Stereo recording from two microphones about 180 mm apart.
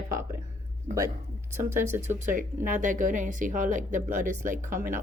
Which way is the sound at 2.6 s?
45° right (ahead or behind).